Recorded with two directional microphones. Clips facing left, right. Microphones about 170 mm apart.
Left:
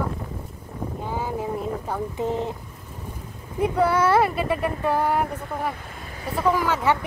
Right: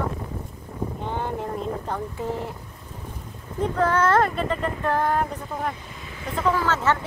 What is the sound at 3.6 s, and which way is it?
Speech, 10° left (ahead or behind).